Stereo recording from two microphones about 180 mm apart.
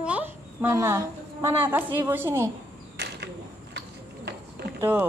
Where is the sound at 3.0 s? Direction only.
65° right (ahead or behind).